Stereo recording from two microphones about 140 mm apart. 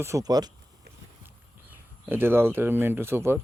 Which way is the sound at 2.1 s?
15° right (ahead or behind).